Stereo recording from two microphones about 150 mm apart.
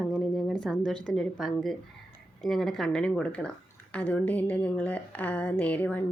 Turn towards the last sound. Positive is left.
turn(degrees=10)  # may be behind; listen again after turning